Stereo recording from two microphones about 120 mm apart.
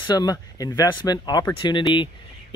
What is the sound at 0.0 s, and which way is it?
Speech, 35° left (ahead or behind).